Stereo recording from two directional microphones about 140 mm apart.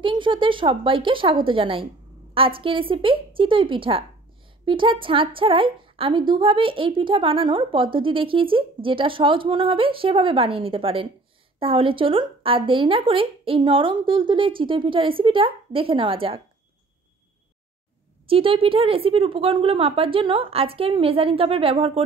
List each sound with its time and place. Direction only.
0.0 s a woman's voice: 35° right (ahead or behind)
18.2 s a woman's voice: 40° right (ahead or behind)